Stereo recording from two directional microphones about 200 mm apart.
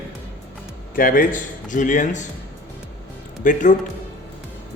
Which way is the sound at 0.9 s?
45° left (ahead or behind).